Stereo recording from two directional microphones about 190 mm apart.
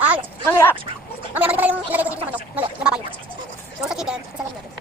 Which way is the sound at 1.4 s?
10° right (ahead or behind).